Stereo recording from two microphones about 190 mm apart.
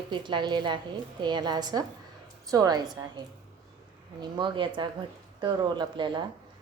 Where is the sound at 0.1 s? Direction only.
25° right (ahead or behind).